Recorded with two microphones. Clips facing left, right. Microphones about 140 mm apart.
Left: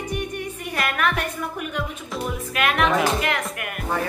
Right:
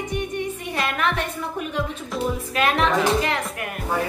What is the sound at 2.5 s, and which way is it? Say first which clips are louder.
Speech: even; 30° right (ahead or behind).